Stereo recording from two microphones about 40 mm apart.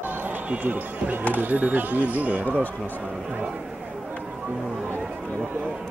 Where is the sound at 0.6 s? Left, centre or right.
Right.